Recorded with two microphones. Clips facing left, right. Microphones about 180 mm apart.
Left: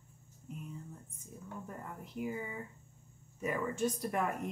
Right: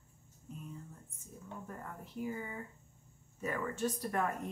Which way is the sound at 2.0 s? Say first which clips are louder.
Left 1 dB; 15° left (ahead or behind).